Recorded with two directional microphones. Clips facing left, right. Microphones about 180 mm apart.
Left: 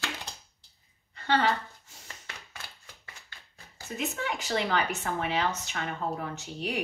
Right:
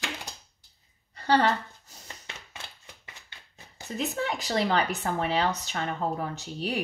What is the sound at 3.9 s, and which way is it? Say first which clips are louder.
Speech: right 3 dB; 35° right (ahead or behind).